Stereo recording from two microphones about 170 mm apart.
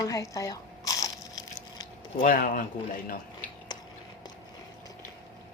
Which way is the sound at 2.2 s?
55° left (ahead or behind).